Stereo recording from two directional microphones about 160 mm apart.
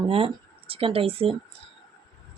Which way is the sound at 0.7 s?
35° right (ahead or behind).